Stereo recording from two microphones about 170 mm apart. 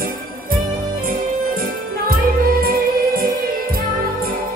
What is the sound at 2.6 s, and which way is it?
Music, 60° right (ahead or behind).